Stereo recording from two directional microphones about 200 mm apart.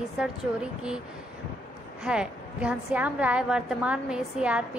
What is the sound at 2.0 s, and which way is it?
A woman's voice, 5° right (ahead or behind).